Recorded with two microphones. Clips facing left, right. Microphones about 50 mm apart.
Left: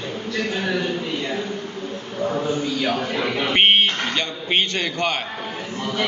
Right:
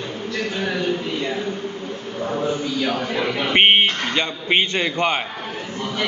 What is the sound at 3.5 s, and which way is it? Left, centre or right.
Speech, centre.